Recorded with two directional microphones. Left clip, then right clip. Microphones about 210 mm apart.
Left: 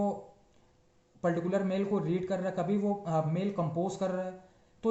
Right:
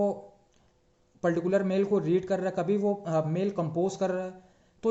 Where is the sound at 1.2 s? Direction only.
40° right (ahead or behind).